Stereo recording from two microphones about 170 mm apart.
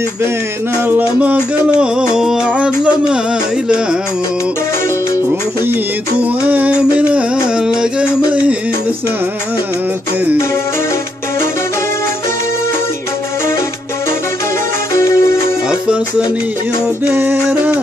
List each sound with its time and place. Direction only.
0.8 s music: 10° right (ahead or behind)
6.2 s music: 10° right (ahead or behind)
15.0 s music: 15° left (ahead or behind)
17.1 s music: 10° right (ahead or behind)